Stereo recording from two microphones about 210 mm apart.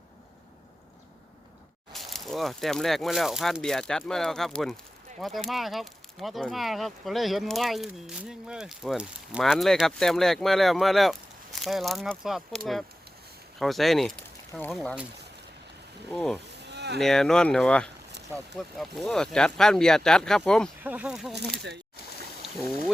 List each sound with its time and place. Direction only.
1.9 s speech: centre (ahead or behind)
16.1 s speech: centre (ahead or behind)
16.6 s a sound: 55° right (ahead or behind)
17.0 s speech: centre (ahead or behind)